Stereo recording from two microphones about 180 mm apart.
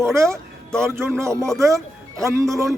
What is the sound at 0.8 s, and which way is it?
A man's voice, 15° right (ahead or behind).